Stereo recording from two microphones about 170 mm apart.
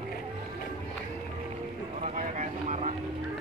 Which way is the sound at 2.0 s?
45° right (ahead or behind).